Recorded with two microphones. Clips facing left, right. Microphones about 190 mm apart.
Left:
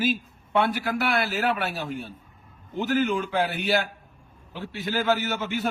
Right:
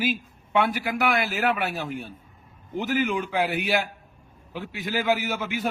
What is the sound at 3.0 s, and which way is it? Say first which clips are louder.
Speech: even; centre (ahead or behind).